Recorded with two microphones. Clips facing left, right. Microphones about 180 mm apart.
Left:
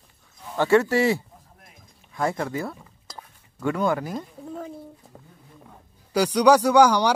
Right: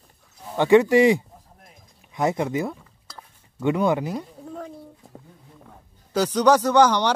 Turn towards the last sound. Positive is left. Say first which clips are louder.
# left 1 dB
turn(degrees=10)  # may be behind; listen again after turning